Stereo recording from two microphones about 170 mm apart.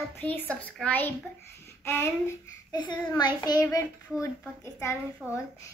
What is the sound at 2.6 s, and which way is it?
A child's voice, 25° left (ahead or behind).